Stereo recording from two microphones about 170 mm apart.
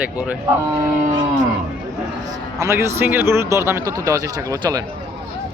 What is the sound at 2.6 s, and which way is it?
Speech, 15° right (ahead or behind).